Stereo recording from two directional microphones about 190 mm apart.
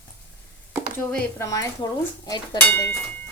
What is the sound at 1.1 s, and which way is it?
Speech, 15° left (ahead or behind).